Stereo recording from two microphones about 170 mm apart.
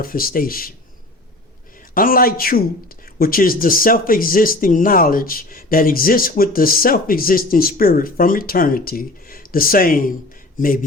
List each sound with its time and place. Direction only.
0.0 s speech: 60° left (ahead or behind)
2.0 s speech: 55° left (ahead or behind)